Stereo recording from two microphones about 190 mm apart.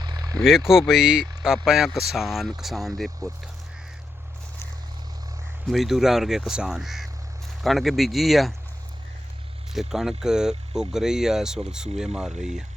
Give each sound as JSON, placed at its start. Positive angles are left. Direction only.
{"t": 0.0, "sound": "vehicle", "side_deg": -20}
{"t": 0.4, "sound": "speech", "side_deg": 0}
{"t": 5.6, "sound": "speech", "side_deg": 0}
{"t": 9.7, "sound": "speech", "side_deg": 0}